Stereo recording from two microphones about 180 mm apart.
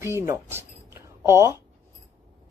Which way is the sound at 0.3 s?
15° right (ahead or behind).